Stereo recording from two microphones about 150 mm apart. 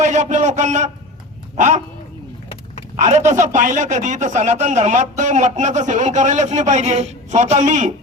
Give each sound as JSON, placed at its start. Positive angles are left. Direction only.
{"t": 0.0, "sound": "a man's voice", "side_deg": -55}
{"t": 2.9, "sound": "speech", "side_deg": -50}